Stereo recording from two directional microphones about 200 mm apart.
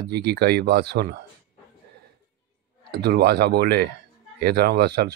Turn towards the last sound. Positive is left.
turn(degrees=-55)  # may be behind; listen again after turning